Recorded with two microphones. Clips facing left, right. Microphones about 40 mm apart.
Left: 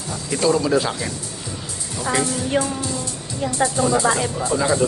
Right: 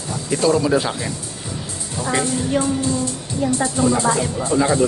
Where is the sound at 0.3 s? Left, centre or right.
Centre.